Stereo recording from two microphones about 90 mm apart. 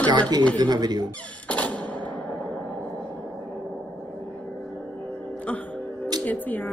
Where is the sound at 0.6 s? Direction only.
50° right (ahead or behind).